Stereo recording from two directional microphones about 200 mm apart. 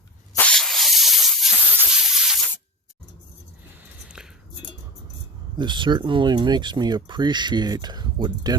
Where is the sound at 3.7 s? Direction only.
5° right (ahead or behind).